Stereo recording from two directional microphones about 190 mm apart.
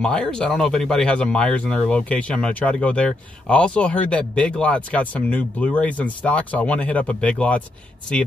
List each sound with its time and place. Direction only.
0.0 s speech: 5° left (ahead or behind)